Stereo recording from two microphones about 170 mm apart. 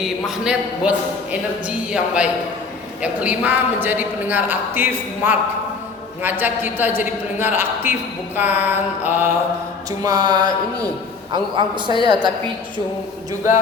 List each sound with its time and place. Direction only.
0.0 s a man's voice: 5° right (ahead or behind)
10.0 s a man's voice: 20° right (ahead or behind)